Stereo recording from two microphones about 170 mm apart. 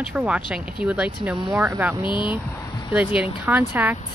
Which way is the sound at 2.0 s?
30° left (ahead or behind).